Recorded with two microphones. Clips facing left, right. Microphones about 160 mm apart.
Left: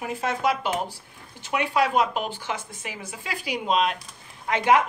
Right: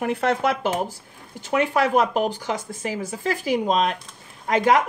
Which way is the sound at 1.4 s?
45° right (ahead or behind).